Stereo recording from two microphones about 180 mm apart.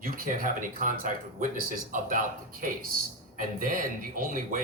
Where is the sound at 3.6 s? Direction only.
50° right (ahead or behind).